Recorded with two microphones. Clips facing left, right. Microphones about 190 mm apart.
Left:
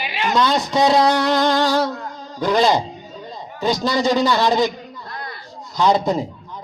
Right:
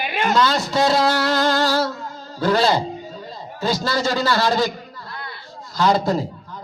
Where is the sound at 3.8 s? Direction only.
20° left (ahead or behind).